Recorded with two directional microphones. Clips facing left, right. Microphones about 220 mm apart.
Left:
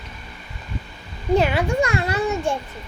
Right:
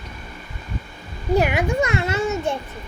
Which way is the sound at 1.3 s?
15° right (ahead or behind).